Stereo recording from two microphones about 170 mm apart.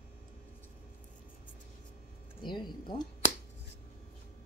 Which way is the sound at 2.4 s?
25° left (ahead or behind).